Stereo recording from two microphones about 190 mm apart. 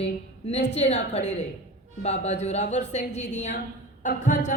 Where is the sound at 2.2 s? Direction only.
35° left (ahead or behind).